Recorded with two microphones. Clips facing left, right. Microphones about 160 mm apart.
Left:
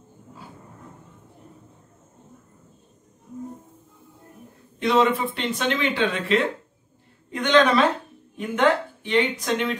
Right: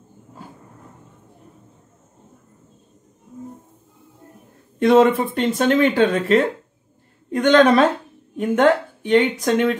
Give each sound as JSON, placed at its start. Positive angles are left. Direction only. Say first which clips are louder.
{"t": 4.7, "sound": "a woman's voice", "louder": "right 6 dB", "side_deg": -50}